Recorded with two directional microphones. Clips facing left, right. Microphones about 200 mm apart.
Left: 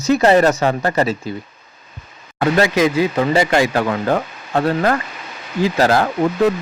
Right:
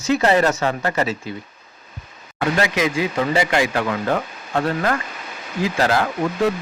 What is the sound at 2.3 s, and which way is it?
Speech, 35° left (ahead or behind).